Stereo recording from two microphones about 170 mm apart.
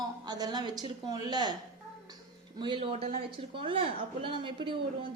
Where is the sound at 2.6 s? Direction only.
30° right (ahead or behind).